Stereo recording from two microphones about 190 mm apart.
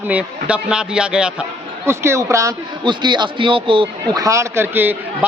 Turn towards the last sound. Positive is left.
turn(degrees=-10)  # may be behind; listen again after turning